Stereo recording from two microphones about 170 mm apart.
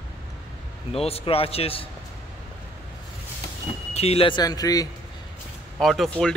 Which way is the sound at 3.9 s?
35° left (ahead or behind).